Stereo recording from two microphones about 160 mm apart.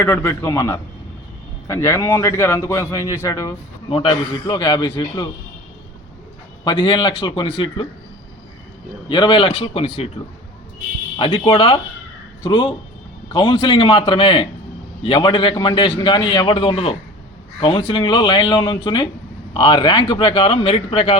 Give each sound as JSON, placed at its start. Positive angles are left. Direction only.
{"t": 0.0, "sound": "a man's voice", "side_deg": 15}
{"t": 3.8, "sound": "a man's voice", "side_deg": 35}
{"t": 6.7, "sound": "a man's voice", "side_deg": 30}
{"t": 9.0, "sound": "a man's voice", "side_deg": 30}
{"t": 11.2, "sound": "a man's voice", "side_deg": 35}